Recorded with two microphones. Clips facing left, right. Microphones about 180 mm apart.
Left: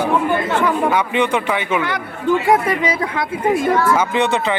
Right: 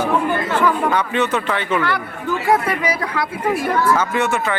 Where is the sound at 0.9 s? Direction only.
10° left (ahead or behind).